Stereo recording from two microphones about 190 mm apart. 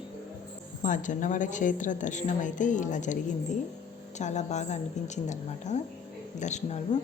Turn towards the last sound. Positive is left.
turn(degrees=35)  # may be behind; listen again after turning